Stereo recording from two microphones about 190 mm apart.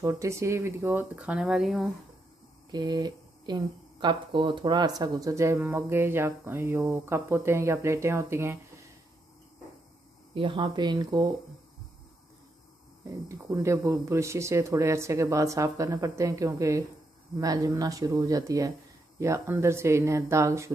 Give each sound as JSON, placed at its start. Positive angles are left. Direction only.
{"t": 0.0, "sound": "speech", "side_deg": -15}
{"t": 2.7, "sound": "speech", "side_deg": -20}
{"t": 10.3, "sound": "speech", "side_deg": -25}
{"t": 13.0, "sound": "speech", "side_deg": -15}